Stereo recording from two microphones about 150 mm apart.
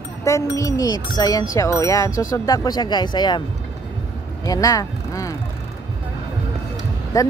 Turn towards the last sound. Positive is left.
turn(degrees=20)  # may be behind; listen again after turning